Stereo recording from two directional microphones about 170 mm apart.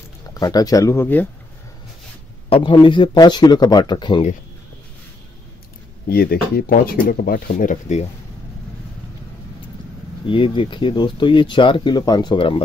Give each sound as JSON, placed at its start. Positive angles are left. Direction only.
{"t": 0.3, "sound": "speech", "side_deg": 20}
{"t": 2.5, "sound": "speech", "side_deg": 30}
{"t": 6.0, "sound": "speech", "side_deg": 65}
{"t": 10.2, "sound": "speech", "side_deg": 30}